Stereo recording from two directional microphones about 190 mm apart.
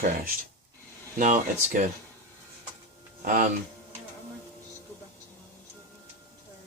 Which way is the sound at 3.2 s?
45° right (ahead or behind).